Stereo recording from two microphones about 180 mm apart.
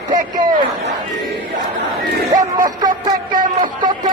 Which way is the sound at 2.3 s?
20° right (ahead or behind).